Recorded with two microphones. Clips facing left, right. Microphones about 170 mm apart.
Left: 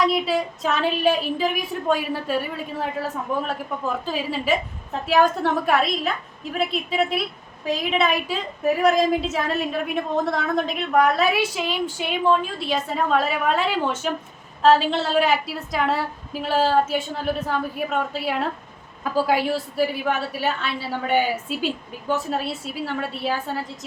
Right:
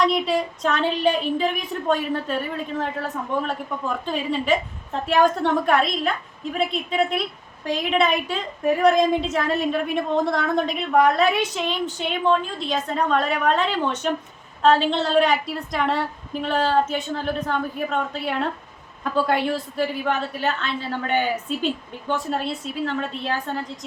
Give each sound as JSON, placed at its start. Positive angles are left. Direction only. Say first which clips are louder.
{"t": 0.0, "sound": "a woman's voice", "louder": "even", "side_deg": 0}